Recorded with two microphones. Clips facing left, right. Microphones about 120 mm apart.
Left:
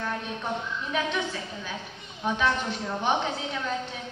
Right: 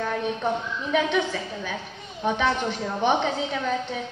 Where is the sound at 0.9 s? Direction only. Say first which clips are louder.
Right 6 dB; 60° right (ahead or behind).